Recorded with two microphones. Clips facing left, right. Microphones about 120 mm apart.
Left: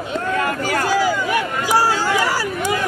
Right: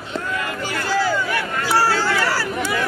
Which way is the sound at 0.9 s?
15° left (ahead or behind).